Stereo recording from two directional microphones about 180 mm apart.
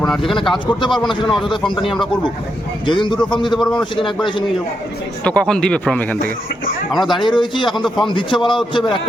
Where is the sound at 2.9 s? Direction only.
25° left (ahead or behind).